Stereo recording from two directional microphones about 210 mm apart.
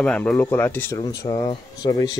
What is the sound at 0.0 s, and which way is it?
Speech, 5° left (ahead or behind).